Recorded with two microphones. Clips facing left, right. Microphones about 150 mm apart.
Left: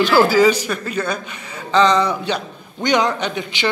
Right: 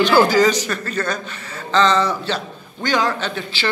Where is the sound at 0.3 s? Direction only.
10° left (ahead or behind).